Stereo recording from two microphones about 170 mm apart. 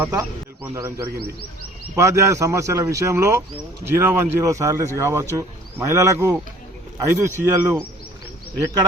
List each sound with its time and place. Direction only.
0.0 s a man's voice: 15° right (ahead or behind)